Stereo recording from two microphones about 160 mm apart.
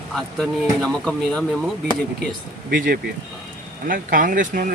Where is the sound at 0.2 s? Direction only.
5° left (ahead or behind).